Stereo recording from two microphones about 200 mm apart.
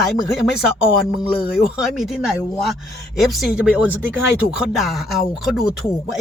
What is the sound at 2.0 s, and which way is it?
Speech, centre (ahead or behind).